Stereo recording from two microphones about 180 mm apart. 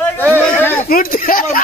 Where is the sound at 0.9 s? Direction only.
50° left (ahead or behind).